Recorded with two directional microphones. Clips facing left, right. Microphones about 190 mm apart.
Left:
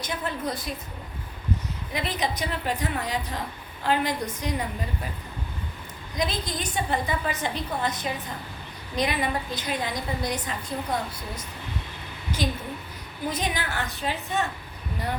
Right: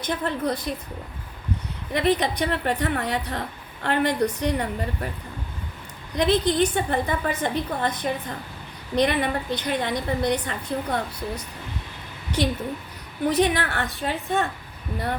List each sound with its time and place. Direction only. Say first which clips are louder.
0.0 s a woman's voice: right 4 dB; 60° right (ahead or behind)
1.9 s a woman's voice: right 7 dB; 60° right (ahead or behind)
6.1 s a woman's voice: right 9 dB; 65° right (ahead or behind)
13.2 s a woman's voice: right 8 dB; 65° right (ahead or behind)